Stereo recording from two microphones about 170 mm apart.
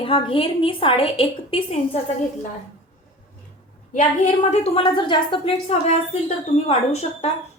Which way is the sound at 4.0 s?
45° left (ahead or behind).